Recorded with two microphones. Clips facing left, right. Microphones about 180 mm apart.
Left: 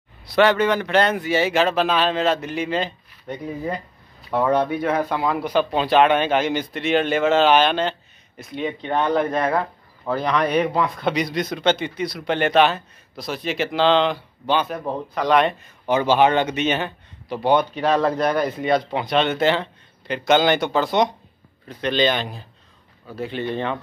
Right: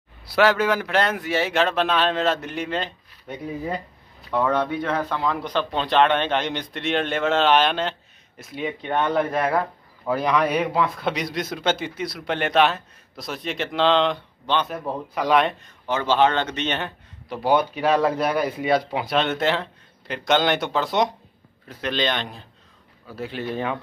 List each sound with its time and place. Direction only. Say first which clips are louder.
0.3 s speech: left 2 dB; 5° right (ahead or behind)
15.9 s speech: left 3 dB; 15° left (ahead or behind); by 23.8 s 5° right (ahead or behind)